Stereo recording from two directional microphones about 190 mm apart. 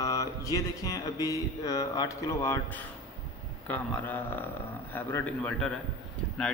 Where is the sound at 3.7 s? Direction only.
10° left (ahead or behind).